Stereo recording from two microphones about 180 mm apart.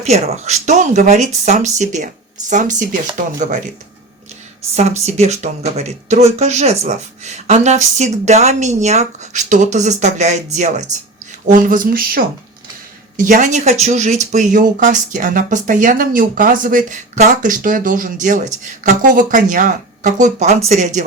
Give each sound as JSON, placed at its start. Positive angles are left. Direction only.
{"t": 0.0, "sound": "speech", "side_deg": -35}
{"t": 4.7, "sound": "speech", "side_deg": -35}